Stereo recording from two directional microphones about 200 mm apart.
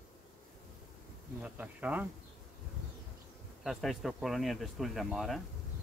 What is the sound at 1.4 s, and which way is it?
Speech, 5° right (ahead or behind).